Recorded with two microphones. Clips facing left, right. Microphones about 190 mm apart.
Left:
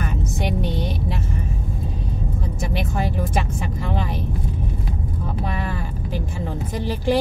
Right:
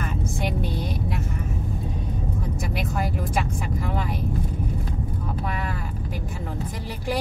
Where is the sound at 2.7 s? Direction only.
25° left (ahead or behind).